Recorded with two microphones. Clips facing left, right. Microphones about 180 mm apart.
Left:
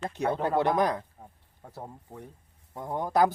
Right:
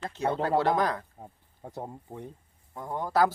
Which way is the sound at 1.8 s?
15° right (ahead or behind).